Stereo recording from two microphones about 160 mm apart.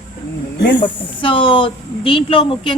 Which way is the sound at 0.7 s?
30° left (ahead or behind).